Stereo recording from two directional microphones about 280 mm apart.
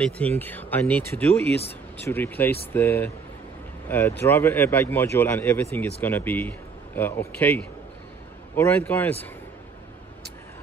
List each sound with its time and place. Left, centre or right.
0.4 s speech: centre